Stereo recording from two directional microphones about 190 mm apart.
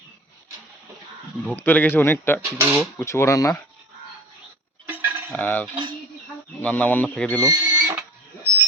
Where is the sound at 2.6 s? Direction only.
10° right (ahead or behind).